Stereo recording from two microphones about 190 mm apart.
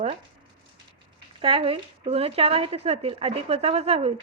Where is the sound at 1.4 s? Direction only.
30° right (ahead or behind).